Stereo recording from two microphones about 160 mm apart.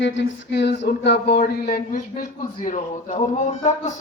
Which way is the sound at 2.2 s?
55° left (ahead or behind).